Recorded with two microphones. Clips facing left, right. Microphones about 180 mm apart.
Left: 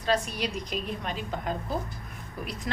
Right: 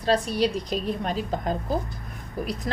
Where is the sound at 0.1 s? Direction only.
35° right (ahead or behind).